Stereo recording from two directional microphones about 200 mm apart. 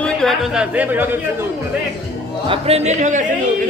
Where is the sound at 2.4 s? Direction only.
30° right (ahead or behind).